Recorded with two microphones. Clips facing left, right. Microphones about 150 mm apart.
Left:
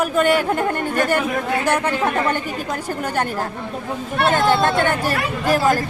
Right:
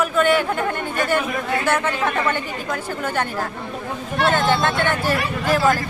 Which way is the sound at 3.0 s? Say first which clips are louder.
Left 1 dB; 40° left (ahead or behind).